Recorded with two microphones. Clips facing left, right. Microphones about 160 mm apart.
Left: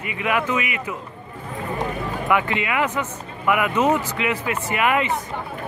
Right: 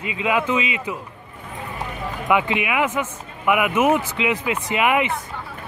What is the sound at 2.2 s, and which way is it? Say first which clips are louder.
A man's voice: right 2 dB; 15° right (ahead or behind).